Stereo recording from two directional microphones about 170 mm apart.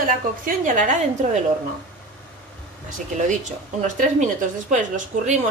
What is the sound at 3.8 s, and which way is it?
A woman's voice, 45° right (ahead or behind).